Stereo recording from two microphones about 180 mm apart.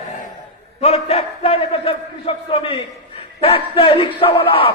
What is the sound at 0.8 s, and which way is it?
Speech, 35° left (ahead or behind).